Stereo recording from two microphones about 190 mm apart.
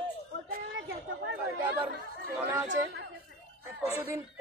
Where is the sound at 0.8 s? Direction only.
90° right.